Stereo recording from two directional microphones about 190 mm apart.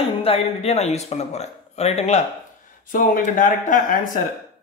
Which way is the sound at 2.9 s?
45° left (ahead or behind).